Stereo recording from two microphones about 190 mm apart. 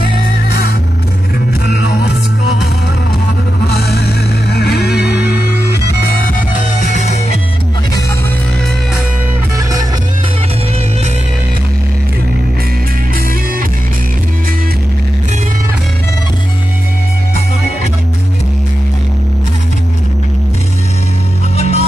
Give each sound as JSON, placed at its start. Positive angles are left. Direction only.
{"t": 1.7, "sound": "music", "side_deg": 60}
{"t": 3.6, "sound": "music", "side_deg": 55}
{"t": 9.6, "sound": "music", "side_deg": -20}
{"t": 21.5, "sound": "music", "side_deg": 35}